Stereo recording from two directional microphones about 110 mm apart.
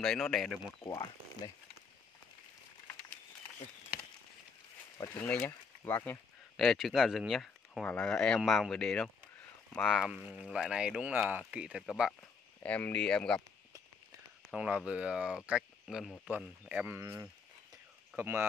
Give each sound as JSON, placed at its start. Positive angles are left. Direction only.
{"t": 0.3, "sound": "speech", "side_deg": 0}
{"t": 0.8, "sound": "speech", "side_deg": 35}
{"t": 5.0, "sound": "speech", "side_deg": 15}
{"t": 6.5, "sound": "speech", "side_deg": 5}
{"t": 11.8, "sound": "speech", "side_deg": 5}
{"t": 14.5, "sound": "speech", "side_deg": -10}